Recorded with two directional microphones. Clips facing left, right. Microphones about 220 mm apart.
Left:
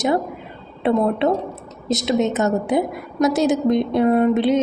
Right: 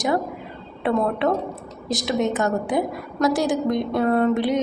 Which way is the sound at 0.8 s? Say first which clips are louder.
Left 3 dB; 25° left (ahead or behind).